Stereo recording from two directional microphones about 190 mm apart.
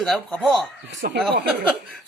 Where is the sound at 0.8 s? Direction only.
60° right (ahead or behind).